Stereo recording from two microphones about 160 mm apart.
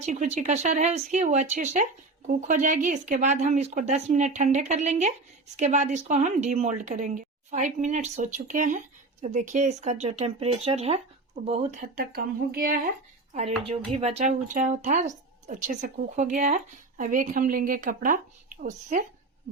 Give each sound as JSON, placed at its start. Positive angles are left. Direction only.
{"t": 0.0, "sound": "speech", "side_deg": -45}
{"t": 11.8, "sound": "speech", "side_deg": -60}
{"t": 13.7, "sound": "speech", "side_deg": -45}